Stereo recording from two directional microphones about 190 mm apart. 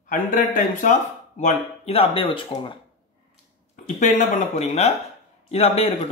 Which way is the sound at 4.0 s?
40° left (ahead or behind).